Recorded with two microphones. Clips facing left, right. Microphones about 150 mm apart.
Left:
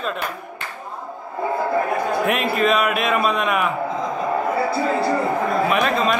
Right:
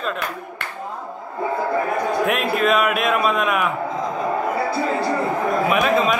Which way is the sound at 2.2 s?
Centre (ahead or behind).